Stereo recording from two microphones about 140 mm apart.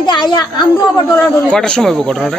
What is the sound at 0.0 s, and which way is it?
Speech, 30° left (ahead or behind).